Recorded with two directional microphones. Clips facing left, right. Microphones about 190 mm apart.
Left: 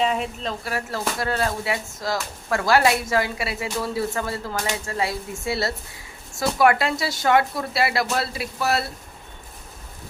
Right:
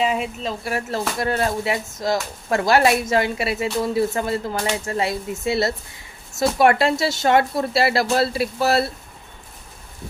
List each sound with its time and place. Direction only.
0.0 s speech: 5° right (ahead or behind)
0.7 s speech: 20° right (ahead or behind)